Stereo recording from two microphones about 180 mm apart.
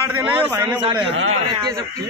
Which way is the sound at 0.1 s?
10° right (ahead or behind).